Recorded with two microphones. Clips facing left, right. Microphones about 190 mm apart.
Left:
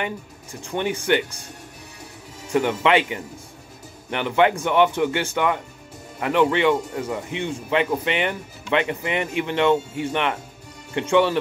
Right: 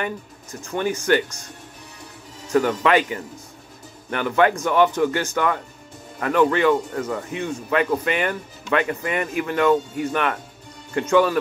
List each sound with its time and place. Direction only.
0.7 s speech: 15° left (ahead or behind)
2.5 s speech: 15° left (ahead or behind)
6.7 s speech: 10° left (ahead or behind)